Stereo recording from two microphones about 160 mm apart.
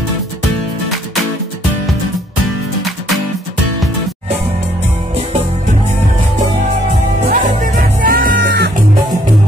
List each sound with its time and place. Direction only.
7.2 s music: 60° right (ahead or behind); by 8.7 s 75° right (ahead or behind)